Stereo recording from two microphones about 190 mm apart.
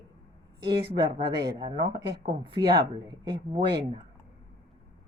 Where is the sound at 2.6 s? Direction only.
20° right (ahead or behind).